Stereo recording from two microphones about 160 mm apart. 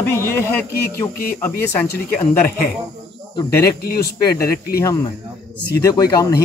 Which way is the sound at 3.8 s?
75° left (ahead or behind).